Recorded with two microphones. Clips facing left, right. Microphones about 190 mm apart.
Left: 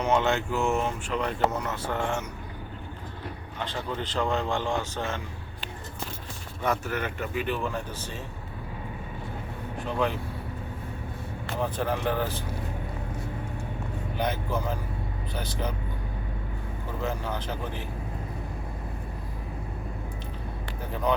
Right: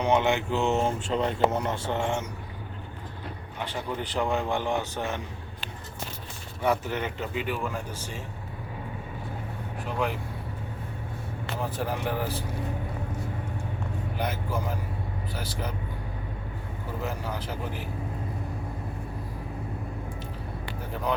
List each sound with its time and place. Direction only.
0.0 s speech: 15° right (ahead or behind)
3.6 s speech: 15° right (ahead or behind)
6.6 s speech: 15° right (ahead or behind)
11.6 s speech: 5° right (ahead or behind)
14.2 s speech: 5° right (ahead or behind)
17.0 s speech: 5° right (ahead or behind)